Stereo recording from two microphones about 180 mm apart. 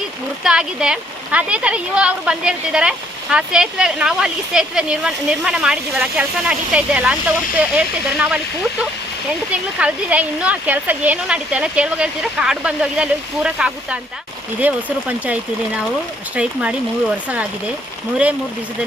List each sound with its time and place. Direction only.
0.4 s speech: 5° right (ahead or behind)
9.5 s speech: 5° right (ahead or behind)